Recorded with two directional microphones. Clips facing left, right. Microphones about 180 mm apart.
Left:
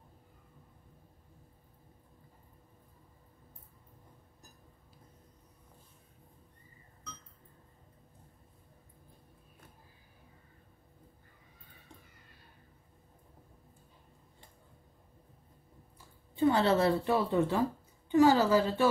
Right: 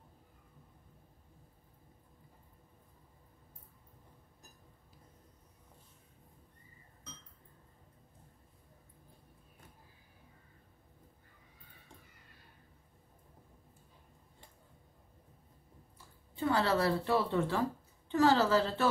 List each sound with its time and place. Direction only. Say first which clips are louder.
16.3 s a woman's voice: left 4 dB; 20° left (ahead or behind)